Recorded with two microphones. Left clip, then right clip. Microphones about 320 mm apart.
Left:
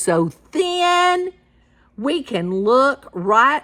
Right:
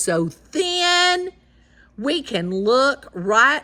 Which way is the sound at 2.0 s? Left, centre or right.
Centre.